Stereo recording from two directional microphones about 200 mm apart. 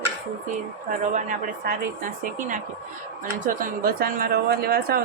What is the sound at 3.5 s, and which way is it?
Speech, 45° right (ahead or behind).